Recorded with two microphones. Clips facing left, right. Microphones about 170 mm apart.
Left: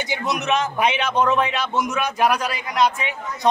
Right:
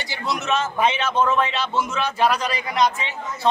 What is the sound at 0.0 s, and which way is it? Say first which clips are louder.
Speech: left 3 dB; 20° left (ahead or behind).